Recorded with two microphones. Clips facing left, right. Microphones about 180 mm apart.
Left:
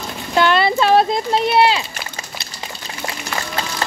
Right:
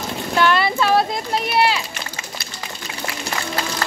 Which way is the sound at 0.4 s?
25° left (ahead or behind).